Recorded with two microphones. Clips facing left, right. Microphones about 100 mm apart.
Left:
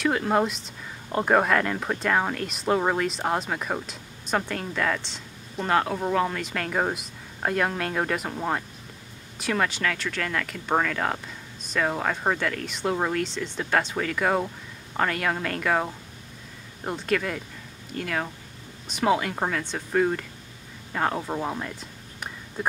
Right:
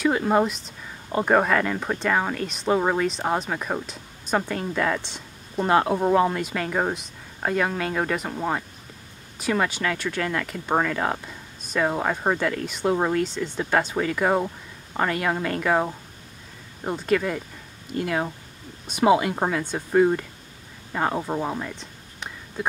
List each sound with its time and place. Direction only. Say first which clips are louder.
0.0 s speech: right 2 dB; 5° right (ahead or behind)
17.9 s speech: right 4 dB; 15° right (ahead or behind); by 22.7 s centre (ahead or behind)